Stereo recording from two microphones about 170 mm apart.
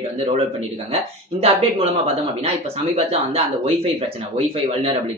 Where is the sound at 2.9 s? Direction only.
35° right (ahead or behind).